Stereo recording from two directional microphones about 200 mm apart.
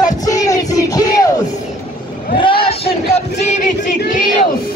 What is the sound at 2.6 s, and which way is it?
Crowd, 30° left (ahead or behind).